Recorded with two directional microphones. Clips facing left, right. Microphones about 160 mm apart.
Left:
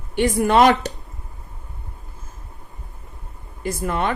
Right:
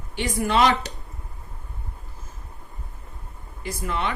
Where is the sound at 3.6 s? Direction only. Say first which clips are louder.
Left 5 dB; 50° left (ahead or behind).